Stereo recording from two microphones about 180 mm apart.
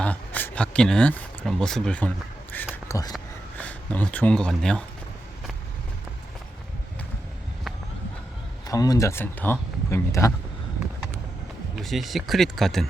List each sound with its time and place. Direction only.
0.0 s speech: 10° left (ahead or behind)
2.8 s a sound: 15° left (ahead or behind)
3.6 s speech: 10° left (ahead or behind)
8.6 s speech: 20° left (ahead or behind)
11.8 s speech: centre (ahead or behind)